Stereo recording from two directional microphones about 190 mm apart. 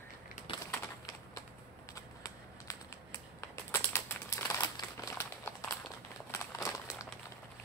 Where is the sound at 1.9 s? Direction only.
15° left (ahead or behind).